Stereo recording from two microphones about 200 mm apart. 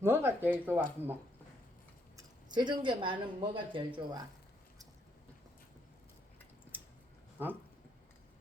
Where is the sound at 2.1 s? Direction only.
20° right (ahead or behind).